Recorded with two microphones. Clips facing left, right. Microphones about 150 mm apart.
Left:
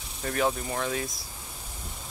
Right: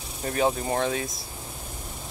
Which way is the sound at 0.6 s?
35° right (ahead or behind).